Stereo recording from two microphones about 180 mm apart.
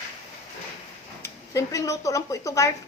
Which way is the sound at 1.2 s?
15° left (ahead or behind).